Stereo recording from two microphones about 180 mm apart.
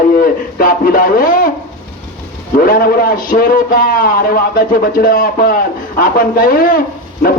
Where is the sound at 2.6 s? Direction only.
55° left (ahead or behind).